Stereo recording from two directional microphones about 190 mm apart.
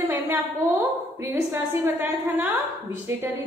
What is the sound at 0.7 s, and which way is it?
A woman's voice, 10° right (ahead or behind).